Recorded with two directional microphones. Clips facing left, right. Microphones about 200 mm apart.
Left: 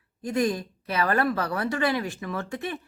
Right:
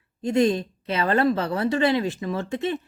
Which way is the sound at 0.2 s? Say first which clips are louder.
Right 5 dB; 25° right (ahead or behind).